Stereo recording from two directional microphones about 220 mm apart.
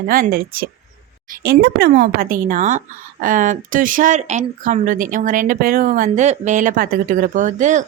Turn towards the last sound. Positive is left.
turn(degrees=-35)  # may be behind; listen again after turning